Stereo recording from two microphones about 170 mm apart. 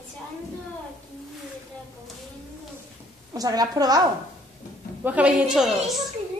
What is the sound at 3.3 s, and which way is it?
Speech, 20° right (ahead or behind).